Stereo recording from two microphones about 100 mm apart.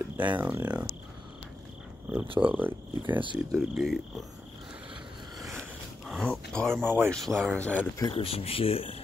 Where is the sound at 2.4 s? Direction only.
20° right (ahead or behind).